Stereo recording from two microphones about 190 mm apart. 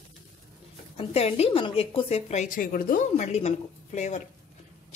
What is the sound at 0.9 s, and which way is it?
A woman's voice, 35° left (ahead or behind).